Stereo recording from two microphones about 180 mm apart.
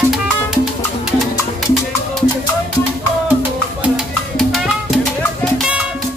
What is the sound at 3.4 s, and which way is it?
Music, 5° right (ahead or behind).